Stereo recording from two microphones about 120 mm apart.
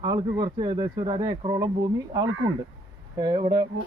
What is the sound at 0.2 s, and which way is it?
Speech, 40° right (ahead or behind).